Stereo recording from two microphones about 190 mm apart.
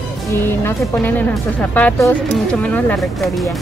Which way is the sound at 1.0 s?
10° left (ahead or behind).